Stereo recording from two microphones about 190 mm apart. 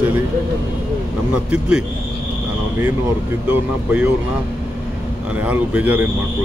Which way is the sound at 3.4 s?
10° right (ahead or behind).